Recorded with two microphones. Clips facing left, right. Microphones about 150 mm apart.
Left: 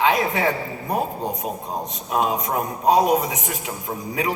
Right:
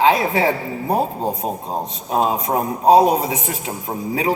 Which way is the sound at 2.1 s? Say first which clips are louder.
Right 3 dB; 30° right (ahead or behind).